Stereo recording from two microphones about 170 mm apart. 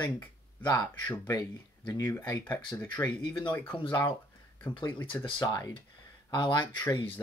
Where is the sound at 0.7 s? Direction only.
20° left (ahead or behind).